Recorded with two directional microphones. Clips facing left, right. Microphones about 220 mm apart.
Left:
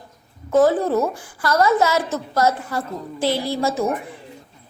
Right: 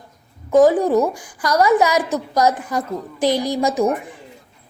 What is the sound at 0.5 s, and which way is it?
A woman's voice, 15° right (ahead or behind).